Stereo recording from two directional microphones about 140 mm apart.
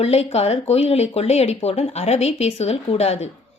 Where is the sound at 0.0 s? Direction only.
50° left (ahead or behind).